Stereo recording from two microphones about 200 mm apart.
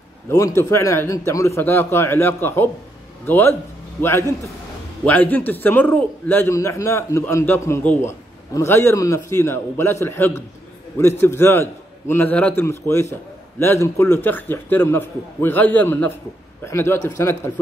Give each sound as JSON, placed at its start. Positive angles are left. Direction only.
{"t": 0.3, "sound": "a man's voice", "side_deg": 15}